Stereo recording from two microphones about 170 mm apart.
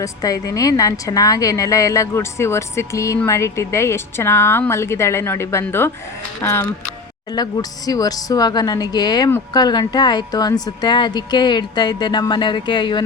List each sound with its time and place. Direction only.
0.0 s a woman's voice: 20° left (ahead or behind)